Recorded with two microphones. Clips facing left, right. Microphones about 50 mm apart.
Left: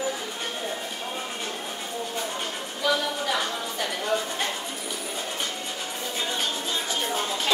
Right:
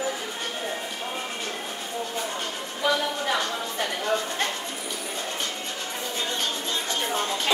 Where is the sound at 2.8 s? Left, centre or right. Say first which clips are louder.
Even; right.